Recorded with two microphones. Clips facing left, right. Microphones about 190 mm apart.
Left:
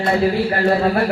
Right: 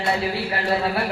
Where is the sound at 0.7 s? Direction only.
45° left (ahead or behind).